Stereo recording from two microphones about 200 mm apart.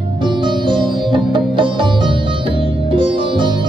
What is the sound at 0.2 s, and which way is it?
Music, 25° right (ahead or behind).